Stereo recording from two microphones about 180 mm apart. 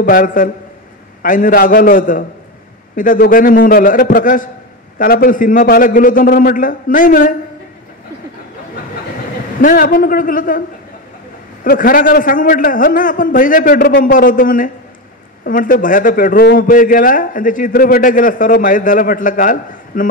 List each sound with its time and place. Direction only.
0.0 s a man's voice: 50° left (ahead or behind)
9.6 s a man's voice: 50° left (ahead or behind)
11.6 s a man's voice: 55° left (ahead or behind)